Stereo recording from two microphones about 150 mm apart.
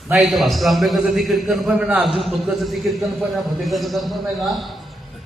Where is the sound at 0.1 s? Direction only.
Centre (ahead or behind).